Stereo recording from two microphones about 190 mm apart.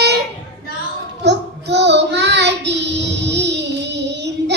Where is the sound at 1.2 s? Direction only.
65° right (ahead or behind).